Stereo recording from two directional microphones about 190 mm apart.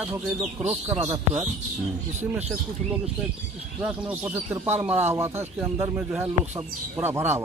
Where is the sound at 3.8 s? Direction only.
5° right (ahead or behind).